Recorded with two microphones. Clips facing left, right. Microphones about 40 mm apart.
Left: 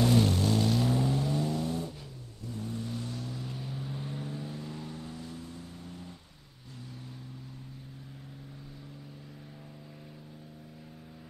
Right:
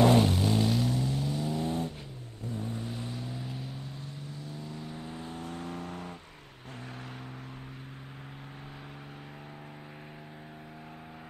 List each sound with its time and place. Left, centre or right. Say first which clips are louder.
0.2 s vehicle: right 1 dB; centre
0.8 s vehicle: left 2 dB; centre
1.5 s vehicle: right 1 dB; right
3.4 s vehicle: left 1 dB; centre
4.9 s vehicle: right 2 dB; right
5.4 s vehicle: right 7 dB; right